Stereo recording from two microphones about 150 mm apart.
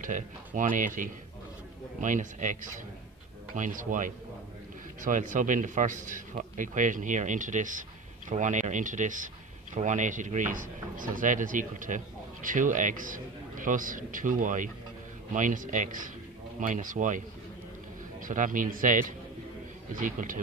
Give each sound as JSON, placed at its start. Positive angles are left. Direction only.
{"t": 0.0, "sound": "speech", "side_deg": -60}
{"t": 18.2, "sound": "speech", "side_deg": -60}